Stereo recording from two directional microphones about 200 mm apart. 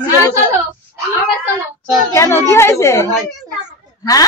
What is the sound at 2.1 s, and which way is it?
A woman's voice, 15° left (ahead or behind).